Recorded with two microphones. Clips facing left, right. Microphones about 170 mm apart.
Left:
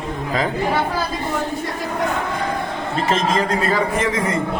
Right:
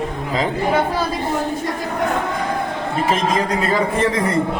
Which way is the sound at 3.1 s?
15° right (ahead or behind).